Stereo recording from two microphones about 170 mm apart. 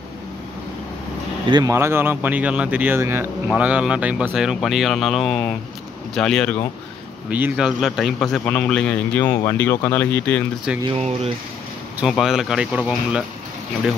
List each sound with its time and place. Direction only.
1.5 s speech: 20° right (ahead or behind); by 6.5 s 5° left (ahead or behind)
7.2 s speech: 10° right (ahead or behind); by 10.4 s 10° left (ahead or behind)
11.0 s speech: 40° right (ahead or behind)
12.0 s speech: centre (ahead or behind)